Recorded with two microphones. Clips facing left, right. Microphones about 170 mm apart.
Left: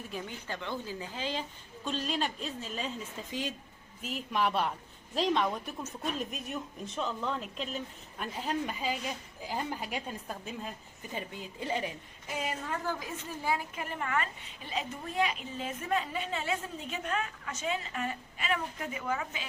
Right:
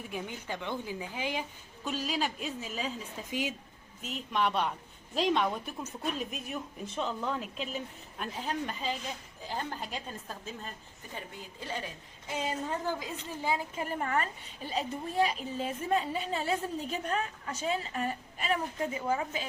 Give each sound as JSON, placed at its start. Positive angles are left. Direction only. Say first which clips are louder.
{"t": 0.1, "sound": "a woman's voice", "louder": "right 2 dB", "side_deg": -15}
{"t": 11.1, "sound": "a woman's voice", "louder": "left 4 dB", "side_deg": 20}
{"t": 12.3, "sound": "a woman's voice", "louder": "right 2 dB", "side_deg": -25}
{"t": 13.8, "sound": "a woman's voice", "louder": "right 3 dB", "side_deg": -35}